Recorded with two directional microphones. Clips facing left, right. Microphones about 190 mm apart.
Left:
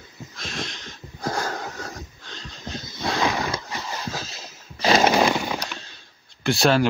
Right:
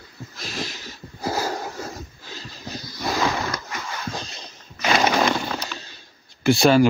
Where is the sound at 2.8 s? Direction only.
25° left (ahead or behind).